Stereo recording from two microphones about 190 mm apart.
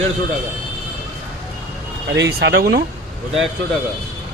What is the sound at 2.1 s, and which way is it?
Speech, 65° right (ahead or behind).